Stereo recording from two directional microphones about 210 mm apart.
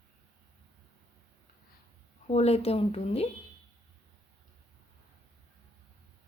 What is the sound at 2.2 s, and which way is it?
Speech, 30° left (ahead or behind).